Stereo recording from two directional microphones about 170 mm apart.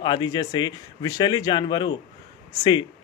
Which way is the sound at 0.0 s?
25° left (ahead or behind).